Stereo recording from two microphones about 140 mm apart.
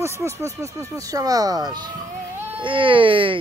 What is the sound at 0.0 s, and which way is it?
Speech, 20° right (ahead or behind).